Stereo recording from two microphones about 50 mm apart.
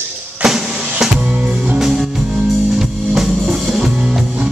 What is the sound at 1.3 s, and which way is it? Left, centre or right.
Music, right.